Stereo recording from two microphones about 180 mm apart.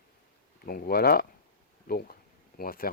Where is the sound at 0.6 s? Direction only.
55° left (ahead or behind).